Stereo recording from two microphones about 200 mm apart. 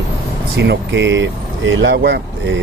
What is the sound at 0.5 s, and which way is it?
Speech, 60° right (ahead or behind).